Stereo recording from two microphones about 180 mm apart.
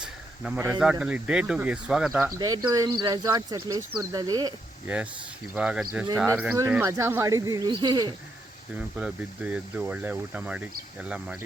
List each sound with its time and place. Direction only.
0.0 s a sound: 5° right (ahead or behind)
0.8 s speech: 5° right (ahead or behind)
2.4 s speech: 20° right (ahead or behind)
4.9 s speech: 5° right (ahead or behind); by 8.1 s 25° right (ahead or behind)
9.0 s speech: 5° right (ahead or behind)